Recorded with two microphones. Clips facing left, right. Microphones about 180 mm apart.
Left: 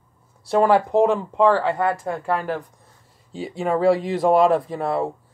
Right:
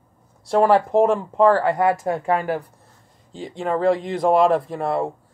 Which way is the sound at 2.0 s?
20° right (ahead or behind).